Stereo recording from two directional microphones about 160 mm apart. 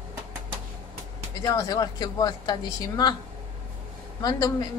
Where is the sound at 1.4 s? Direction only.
25° left (ahead or behind).